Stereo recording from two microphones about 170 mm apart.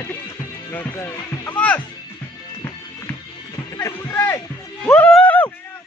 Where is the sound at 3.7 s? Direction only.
15° left (ahead or behind).